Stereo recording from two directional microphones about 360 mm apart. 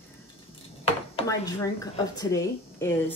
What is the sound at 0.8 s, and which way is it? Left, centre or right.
A woman's voice, centre.